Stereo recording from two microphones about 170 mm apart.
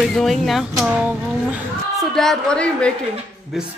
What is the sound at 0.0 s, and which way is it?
A woman's voice, centre (ahead or behind).